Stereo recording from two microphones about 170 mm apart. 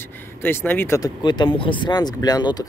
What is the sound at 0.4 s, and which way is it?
Speech, 10° left (ahead or behind).